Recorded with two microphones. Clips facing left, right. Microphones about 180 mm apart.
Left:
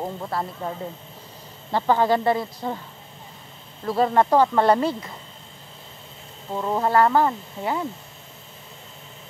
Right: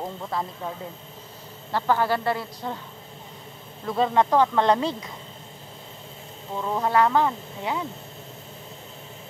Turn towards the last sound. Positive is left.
turn(degrees=5)  # may be behind; listen again after turning